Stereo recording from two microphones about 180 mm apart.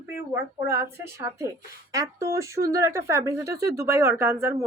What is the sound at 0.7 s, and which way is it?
A woman's voice, 15° right (ahead or behind).